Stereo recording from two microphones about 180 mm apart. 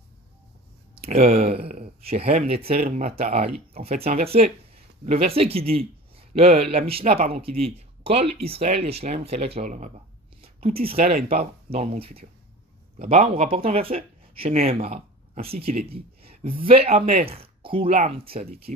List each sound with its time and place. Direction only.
1.0 s speech: 35° right (ahead or behind)
13.3 s speech: 30° right (ahead or behind)
15.9 s a sound: 30° right (ahead or behind)
16.6 s speech: 30° right (ahead or behind)